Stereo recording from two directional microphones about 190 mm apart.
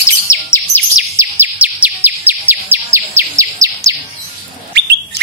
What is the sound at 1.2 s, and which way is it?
Bird vocalization, 10° right (ahead or behind).